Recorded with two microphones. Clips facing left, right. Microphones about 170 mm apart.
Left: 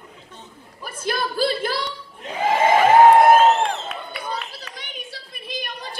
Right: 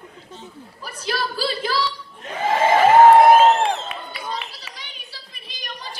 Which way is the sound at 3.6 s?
Centre (ahead or behind).